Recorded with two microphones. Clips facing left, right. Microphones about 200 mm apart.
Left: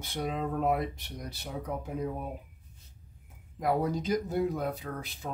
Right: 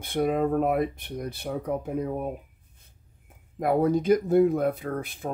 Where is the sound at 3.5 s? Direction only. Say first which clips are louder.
Right 6 dB; 55° right (ahead or behind).